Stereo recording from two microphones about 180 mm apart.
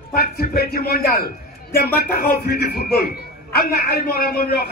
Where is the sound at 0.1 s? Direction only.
60° left (ahead or behind).